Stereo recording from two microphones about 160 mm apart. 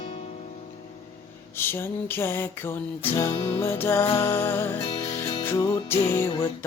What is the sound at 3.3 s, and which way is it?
Music, 30° left (ahead or behind).